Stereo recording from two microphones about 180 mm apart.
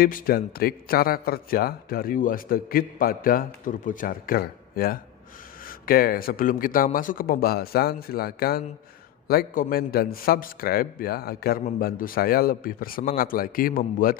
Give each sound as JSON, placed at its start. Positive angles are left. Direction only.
{"t": 0.0, "sound": "a man's voice", "side_deg": 55}